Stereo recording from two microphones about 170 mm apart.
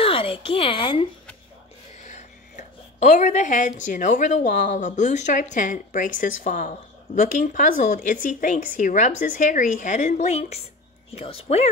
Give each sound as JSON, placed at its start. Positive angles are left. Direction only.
{"t": 0.0, "sound": "a woman's voice", "side_deg": 30}
{"t": 2.0, "sound": "a woman's voice", "side_deg": 45}